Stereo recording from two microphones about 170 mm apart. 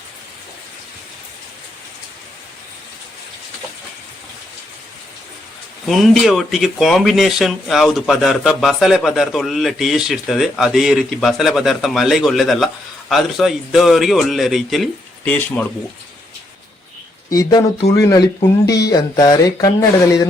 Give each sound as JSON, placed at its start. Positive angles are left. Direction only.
{"t": 5.9, "sound": "speech", "side_deg": 0}
{"t": 17.3, "sound": "speech", "side_deg": 20}